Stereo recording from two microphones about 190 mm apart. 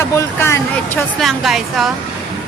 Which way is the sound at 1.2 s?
Centre (ahead or behind).